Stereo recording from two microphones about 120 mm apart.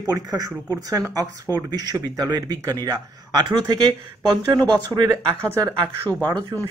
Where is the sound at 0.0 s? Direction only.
30° right (ahead or behind).